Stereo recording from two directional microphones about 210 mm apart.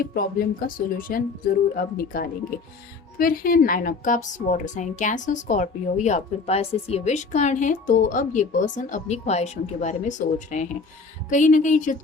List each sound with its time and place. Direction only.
0.0 s a woman's voice: 45° left (ahead or behind)